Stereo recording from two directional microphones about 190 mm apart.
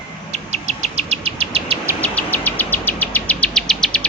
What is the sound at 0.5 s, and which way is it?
Insect, 35° right (ahead or behind).